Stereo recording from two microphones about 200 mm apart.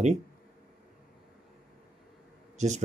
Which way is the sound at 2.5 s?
35° right (ahead or behind).